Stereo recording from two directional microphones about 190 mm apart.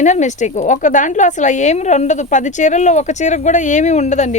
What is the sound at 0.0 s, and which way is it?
A woman's voice, 40° left (ahead or behind).